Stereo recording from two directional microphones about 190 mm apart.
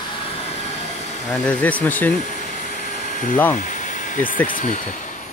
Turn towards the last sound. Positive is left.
turn(degrees=45)  # may be behind; listen again after turning